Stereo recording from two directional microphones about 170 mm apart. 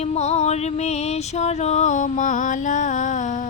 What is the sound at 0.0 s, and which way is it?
Music, 40° left (ahead or behind).